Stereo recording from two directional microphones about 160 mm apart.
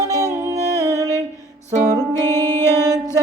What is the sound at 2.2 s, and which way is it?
Music, 15° left (ahead or behind).